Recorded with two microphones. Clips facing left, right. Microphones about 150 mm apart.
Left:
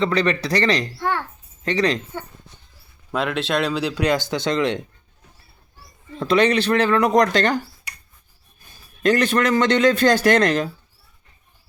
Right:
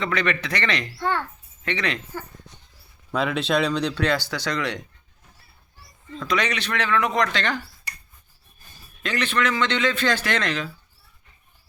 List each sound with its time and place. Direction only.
0.0 s speech: 30° left (ahead or behind)
0.9 s a child's voice: 15° left (ahead or behind)
1.6 s speech: 35° left (ahead or behind)
3.1 s speech: centre (ahead or behind)
4.0 s speech: 20° left (ahead or behind)
6.1 s speech: 30° left (ahead or behind)
9.0 s a man's voice: 45° left (ahead or behind)